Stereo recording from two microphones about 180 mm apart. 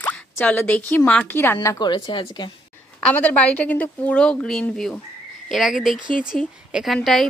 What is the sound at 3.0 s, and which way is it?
A woman's voice, 5° left (ahead or behind).